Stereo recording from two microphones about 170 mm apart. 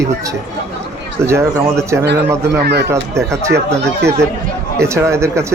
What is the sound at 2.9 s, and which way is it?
Speech, 15° right (ahead or behind).